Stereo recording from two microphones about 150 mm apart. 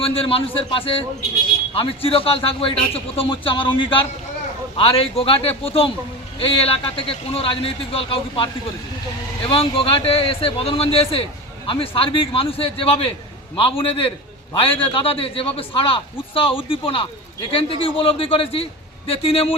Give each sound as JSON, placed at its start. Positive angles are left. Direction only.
{"t": 0.0, "sound": "a man's voice", "side_deg": 40}
{"t": 9.5, "sound": "a man's voice", "side_deg": 35}